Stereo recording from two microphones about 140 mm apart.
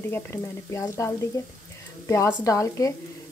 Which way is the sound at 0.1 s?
20° left (ahead or behind).